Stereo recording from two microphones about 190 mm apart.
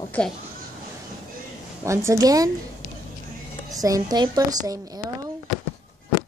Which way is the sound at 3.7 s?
20° right (ahead or behind).